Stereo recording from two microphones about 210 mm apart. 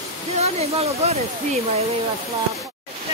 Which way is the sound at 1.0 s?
30° right (ahead or behind).